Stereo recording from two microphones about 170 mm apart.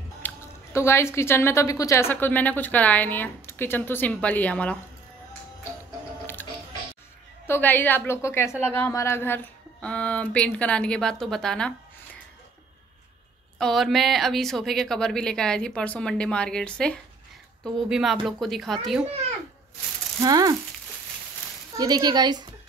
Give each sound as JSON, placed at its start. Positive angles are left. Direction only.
{"t": 0.2, "sound": "music", "side_deg": 10}
{"t": 0.7, "sound": "a woman's voice", "side_deg": 15}
{"t": 7.4, "sound": "a woman's voice", "side_deg": 10}
{"t": 13.6, "sound": "speech", "side_deg": 0}
{"t": 20.2, "sound": "a woman's voice", "side_deg": -20}
{"t": 21.7, "sound": "a woman's voice", "side_deg": -25}